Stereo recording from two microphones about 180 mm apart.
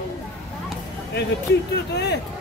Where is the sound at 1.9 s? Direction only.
65° left (ahead or behind).